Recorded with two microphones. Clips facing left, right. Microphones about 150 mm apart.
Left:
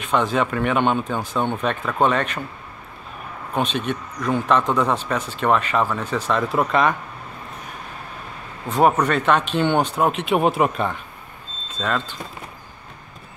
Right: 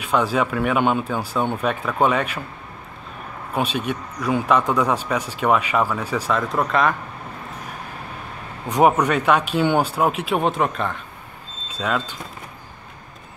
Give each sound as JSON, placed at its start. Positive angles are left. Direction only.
{"t": 0.0, "sound": "a man's voice", "side_deg": -10}
{"t": 3.5, "sound": "a man's voice", "side_deg": -10}
{"t": 6.5, "sound": "speech", "side_deg": 5}
{"t": 8.6, "sound": "a man's voice", "side_deg": -15}
{"t": 11.7, "sound": "a man's voice", "side_deg": -10}